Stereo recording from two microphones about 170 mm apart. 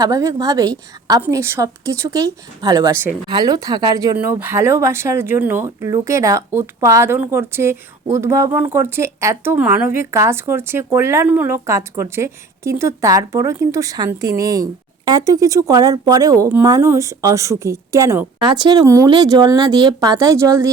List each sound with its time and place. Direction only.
0.0 s a woman's voice: 20° right (ahead or behind)